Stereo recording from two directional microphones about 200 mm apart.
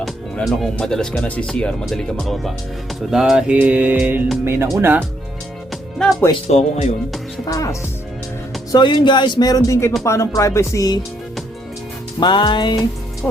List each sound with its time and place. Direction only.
0.0 s speech: centre (ahead or behind)
6.0 s speech: centre (ahead or behind)
6.5 s speech: 35° left (ahead or behind)
7.4 s speech: 15° left (ahead or behind)
12.2 s speech: 25° left (ahead or behind)